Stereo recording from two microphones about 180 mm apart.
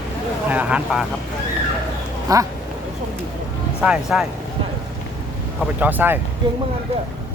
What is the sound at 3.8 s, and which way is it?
Speech, 5° right (ahead or behind).